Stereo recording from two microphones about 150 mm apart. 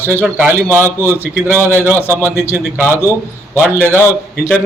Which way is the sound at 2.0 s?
15° left (ahead or behind).